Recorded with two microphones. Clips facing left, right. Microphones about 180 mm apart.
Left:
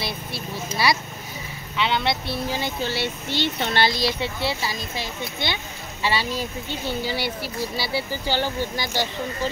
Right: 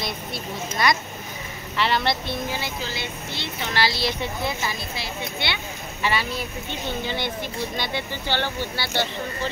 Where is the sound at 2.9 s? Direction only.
75° left (ahead or behind).